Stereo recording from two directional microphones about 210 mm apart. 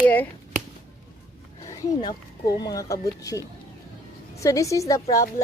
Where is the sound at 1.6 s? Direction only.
15° left (ahead or behind).